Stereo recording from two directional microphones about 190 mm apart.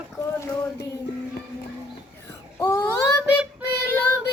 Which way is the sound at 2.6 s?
15° left (ahead or behind).